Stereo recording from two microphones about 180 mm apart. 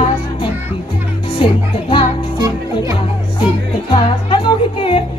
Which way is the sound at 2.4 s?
20° right (ahead or behind).